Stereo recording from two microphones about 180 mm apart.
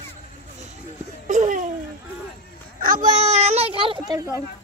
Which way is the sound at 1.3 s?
45° right (ahead or behind).